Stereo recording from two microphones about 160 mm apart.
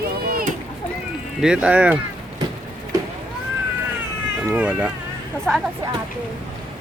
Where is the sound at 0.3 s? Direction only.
65° right (ahead or behind).